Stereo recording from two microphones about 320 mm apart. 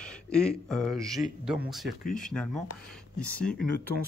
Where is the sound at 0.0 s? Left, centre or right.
Centre.